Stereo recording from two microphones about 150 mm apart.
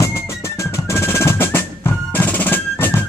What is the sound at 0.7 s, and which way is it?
Percussion, 20° left (ahead or behind).